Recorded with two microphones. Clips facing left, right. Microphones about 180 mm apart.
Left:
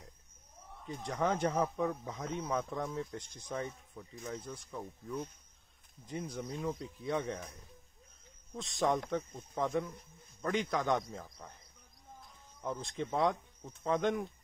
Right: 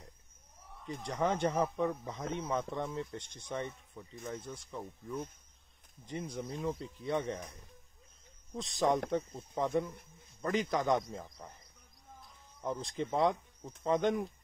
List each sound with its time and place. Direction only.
1.0 s speech: centre (ahead or behind)
8.5 s speech: centre (ahead or behind)
12.6 s speech: centre (ahead or behind)